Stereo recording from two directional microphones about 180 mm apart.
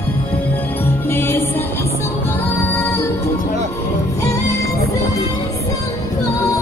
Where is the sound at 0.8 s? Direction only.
10° left (ahead or behind).